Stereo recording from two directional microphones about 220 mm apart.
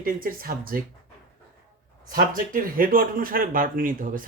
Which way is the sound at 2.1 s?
40° right (ahead or behind).